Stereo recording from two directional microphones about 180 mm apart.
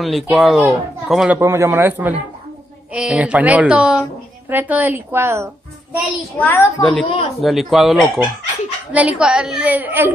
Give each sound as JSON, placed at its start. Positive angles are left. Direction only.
{"t": 0.0, "sound": "speech", "side_deg": 0}
{"t": 6.3, "sound": "a child's voice", "side_deg": 10}
{"t": 7.1, "sound": "speech", "side_deg": 30}
{"t": 7.4, "sound": "speech", "side_deg": 0}